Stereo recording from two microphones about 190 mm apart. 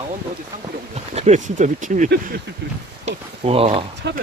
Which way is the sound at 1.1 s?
40° right (ahead or behind).